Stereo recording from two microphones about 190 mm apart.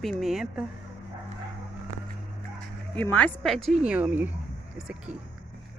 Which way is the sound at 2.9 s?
5° left (ahead or behind).